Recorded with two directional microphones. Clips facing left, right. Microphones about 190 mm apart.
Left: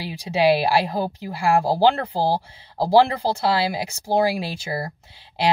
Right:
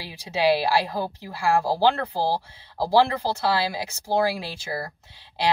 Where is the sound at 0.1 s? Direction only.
15° left (ahead or behind).